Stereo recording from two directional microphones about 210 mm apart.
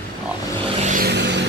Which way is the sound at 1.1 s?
55° right (ahead or behind).